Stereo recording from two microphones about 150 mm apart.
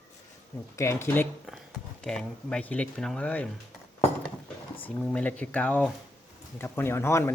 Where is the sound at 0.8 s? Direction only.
15° left (ahead or behind).